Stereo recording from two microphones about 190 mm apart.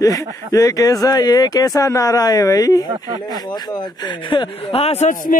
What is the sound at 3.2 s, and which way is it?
Speech, 20° left (ahead or behind).